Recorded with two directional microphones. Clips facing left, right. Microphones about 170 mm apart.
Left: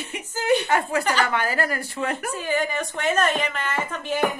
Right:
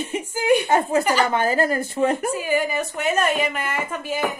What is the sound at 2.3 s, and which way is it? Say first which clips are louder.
Speech: right 3 dB; 10° right (ahead or behind).